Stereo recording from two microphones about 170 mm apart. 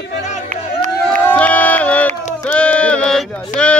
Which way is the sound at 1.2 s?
10° left (ahead or behind).